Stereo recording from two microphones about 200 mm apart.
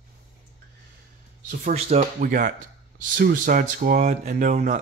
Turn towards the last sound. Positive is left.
turn(degrees=-40)  # may be behind; listen again after turning